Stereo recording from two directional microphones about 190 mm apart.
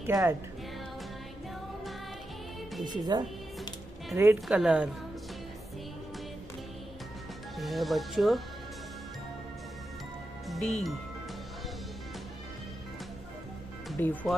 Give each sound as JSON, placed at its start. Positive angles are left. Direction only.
{"t": 0.0, "sound": "speech", "side_deg": -15}
{"t": 2.8, "sound": "speech", "side_deg": -20}
{"t": 4.5, "sound": "speech", "side_deg": -5}
{"t": 7.5, "sound": "speech", "side_deg": 0}
{"t": 10.5, "sound": "speech", "side_deg": 0}
{"t": 13.9, "sound": "speech", "side_deg": 10}